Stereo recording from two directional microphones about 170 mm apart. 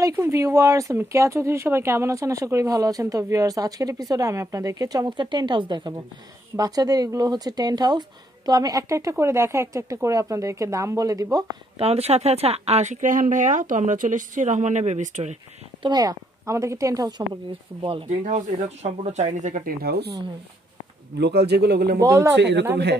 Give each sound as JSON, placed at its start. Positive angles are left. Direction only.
{"t": 0.0, "sound": "a woman's voice", "side_deg": -15}
{"t": 11.8, "sound": "speech", "side_deg": -35}
{"t": 15.8, "sound": "a woman's voice", "side_deg": -25}
{"t": 18.2, "sound": "speech", "side_deg": -45}
{"t": 21.2, "sound": "a man's voice", "side_deg": -75}
{"t": 22.0, "sound": "a woman's voice", "side_deg": -20}
{"t": 22.4, "sound": "speech", "side_deg": -90}